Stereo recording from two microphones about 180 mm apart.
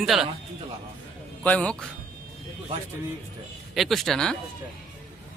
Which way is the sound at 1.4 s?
5° left (ahead or behind).